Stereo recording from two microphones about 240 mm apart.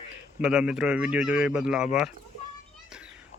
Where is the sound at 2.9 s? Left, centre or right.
Centre.